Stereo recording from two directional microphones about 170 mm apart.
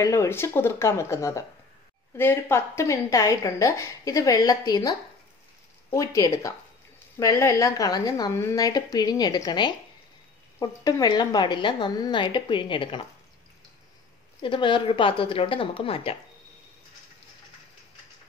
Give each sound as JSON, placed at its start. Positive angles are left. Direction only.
{"t": 0.0, "sound": "a woman's voice", "side_deg": 20}
{"t": 14.4, "sound": "speech", "side_deg": 30}